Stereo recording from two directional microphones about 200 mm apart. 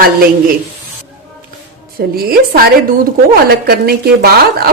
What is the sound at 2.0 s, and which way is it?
Speech, 50° right (ahead or behind).